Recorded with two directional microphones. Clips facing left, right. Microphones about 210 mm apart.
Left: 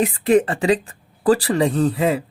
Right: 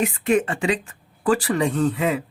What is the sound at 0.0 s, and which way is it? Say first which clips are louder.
Speech: left 4 dB; 35° left (ahead or behind).